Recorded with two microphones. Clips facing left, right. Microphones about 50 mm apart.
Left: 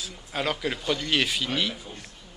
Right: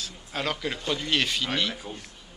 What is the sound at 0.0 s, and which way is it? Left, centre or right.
Speech, centre.